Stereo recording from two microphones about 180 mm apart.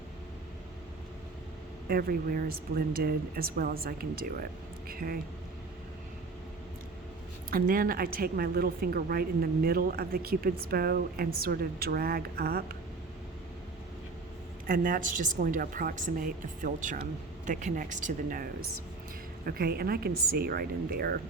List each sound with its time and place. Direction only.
1.9 s a woman's voice: 55° right (ahead or behind)
7.5 s a woman's voice: 55° right (ahead or behind)
14.7 s a woman's voice: 50° right (ahead or behind)
19.5 s a woman's voice: 60° right (ahead or behind)